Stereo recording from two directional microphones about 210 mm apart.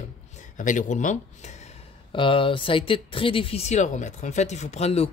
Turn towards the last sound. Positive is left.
turn(degrees=30)  # may be behind; listen again after turning